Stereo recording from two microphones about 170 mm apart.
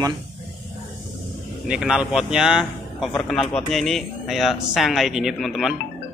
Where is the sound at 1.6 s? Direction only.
5° right (ahead or behind).